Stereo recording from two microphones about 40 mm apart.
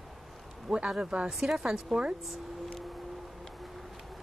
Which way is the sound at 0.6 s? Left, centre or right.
Centre.